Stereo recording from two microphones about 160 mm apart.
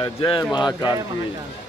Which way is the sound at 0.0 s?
30° left (ahead or behind).